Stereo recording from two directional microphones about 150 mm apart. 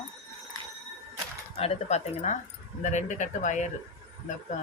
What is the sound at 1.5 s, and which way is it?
Speech, 45° left (ahead or behind).